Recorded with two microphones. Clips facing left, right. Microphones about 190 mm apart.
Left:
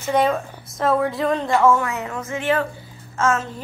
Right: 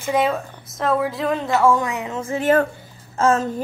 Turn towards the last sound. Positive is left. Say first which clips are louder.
# right 3 dB
turn(degrees=-35)  # may be behind; listen again after turning